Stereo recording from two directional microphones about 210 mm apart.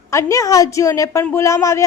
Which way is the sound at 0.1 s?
15° left (ahead or behind).